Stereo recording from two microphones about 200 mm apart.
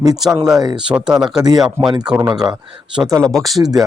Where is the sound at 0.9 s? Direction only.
5° right (ahead or behind).